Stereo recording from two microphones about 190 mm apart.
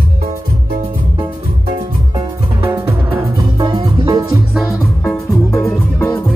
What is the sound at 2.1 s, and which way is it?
Music, 25° right (ahead or behind).